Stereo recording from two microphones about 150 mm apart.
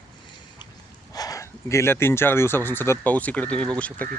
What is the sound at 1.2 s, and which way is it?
Speech, 25° left (ahead or behind).